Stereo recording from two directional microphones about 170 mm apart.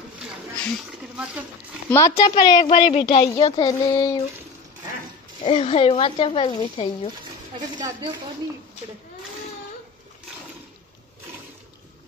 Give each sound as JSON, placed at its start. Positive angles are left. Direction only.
{"t": 1.1, "sound": "speech", "side_deg": -5}
{"t": 1.9, "sound": "a woman's voice", "side_deg": 15}
{"t": 5.4, "sound": "speech", "side_deg": 35}
{"t": 7.7, "sound": "a woman's voice", "side_deg": -25}